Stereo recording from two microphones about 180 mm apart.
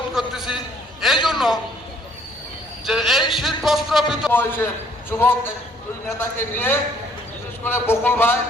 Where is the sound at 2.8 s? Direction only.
Centre (ahead or behind).